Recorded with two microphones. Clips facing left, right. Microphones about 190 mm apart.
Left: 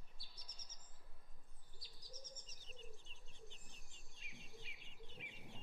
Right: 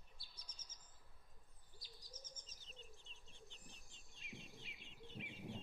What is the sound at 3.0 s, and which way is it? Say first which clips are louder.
Bird: left 2 dB; centre (ahead or behind).